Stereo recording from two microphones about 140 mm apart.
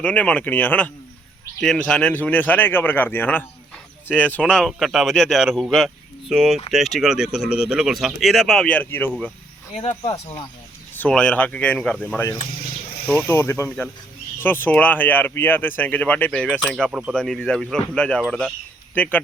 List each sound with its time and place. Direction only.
0.0 s speech: 10° left (ahead or behind)
10.9 s speech: 10° left (ahead or behind)